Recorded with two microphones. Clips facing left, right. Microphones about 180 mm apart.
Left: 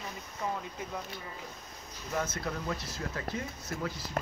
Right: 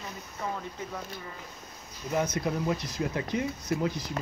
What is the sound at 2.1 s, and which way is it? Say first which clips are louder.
Speech: right 6 dB; 15° right (ahead or behind).